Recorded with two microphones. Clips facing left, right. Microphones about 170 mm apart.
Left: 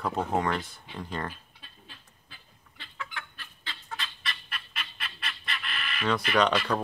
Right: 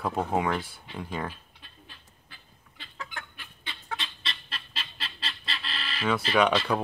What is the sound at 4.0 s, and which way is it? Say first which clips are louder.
Chicken: even; 25° right (ahead or behind).